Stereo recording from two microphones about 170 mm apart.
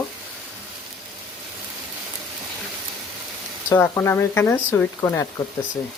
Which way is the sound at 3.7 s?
15° left (ahead or behind).